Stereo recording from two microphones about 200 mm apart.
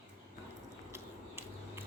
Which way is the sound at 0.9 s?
10° right (ahead or behind).